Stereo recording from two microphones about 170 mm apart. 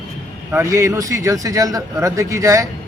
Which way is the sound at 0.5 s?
15° right (ahead or behind).